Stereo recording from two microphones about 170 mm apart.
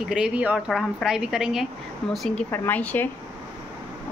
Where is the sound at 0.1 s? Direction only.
5° right (ahead or behind).